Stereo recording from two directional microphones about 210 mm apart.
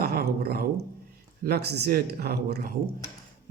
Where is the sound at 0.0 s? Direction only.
45° right (ahead or behind).